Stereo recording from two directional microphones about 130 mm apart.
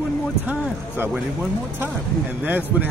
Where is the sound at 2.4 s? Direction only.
15° right (ahead or behind).